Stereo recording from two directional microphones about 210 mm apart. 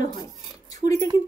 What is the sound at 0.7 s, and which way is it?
Speech, 15° left (ahead or behind).